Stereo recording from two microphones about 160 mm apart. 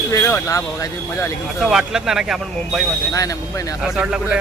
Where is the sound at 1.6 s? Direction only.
5° right (ahead or behind).